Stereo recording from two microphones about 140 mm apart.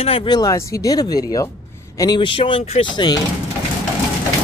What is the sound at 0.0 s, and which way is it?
Speech, 40° left (ahead or behind).